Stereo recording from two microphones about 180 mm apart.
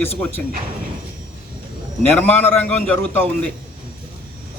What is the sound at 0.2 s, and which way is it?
Speech, 10° left (ahead or behind).